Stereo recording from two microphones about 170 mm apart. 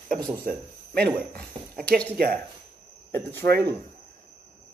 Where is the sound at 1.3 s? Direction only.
5° left (ahead or behind).